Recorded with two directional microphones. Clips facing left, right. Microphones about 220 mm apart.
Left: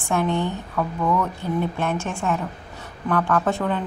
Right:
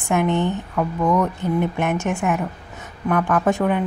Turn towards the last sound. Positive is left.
turn(degrees=-15)  # may be behind; listen again after turning